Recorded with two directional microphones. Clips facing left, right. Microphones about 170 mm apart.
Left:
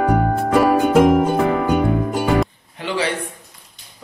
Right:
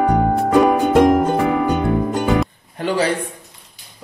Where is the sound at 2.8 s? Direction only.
45° right (ahead or behind).